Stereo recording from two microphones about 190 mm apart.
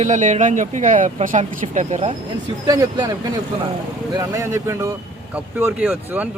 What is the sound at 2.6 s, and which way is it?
Speech, 20° right (ahead or behind).